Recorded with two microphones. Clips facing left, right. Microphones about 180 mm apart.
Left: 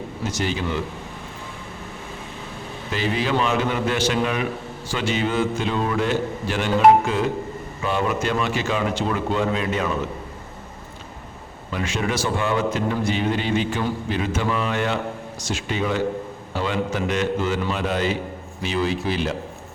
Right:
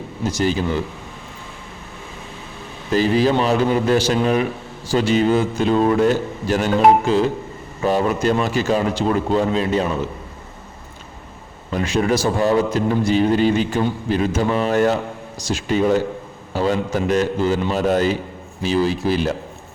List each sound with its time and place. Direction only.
0.3 s a man's voice: 35° right (ahead or behind)
2.9 s a man's voice: 40° right (ahead or behind)
11.7 s a man's voice: 40° right (ahead or behind)